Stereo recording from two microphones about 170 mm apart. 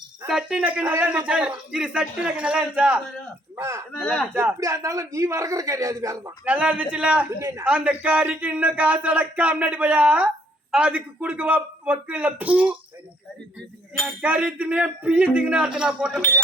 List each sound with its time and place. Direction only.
0.3 s a man's voice: 5° right (ahead or behind)
4.0 s a man's voice: 5° left (ahead or behind)
4.6 s a man's voice: 20° right (ahead or behind)
6.4 s a man's voice: 10° right (ahead or behind)
14.2 s a man's voice: 5° right (ahead or behind)